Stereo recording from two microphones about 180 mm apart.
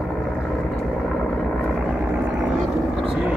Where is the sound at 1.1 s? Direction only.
5° left (ahead or behind).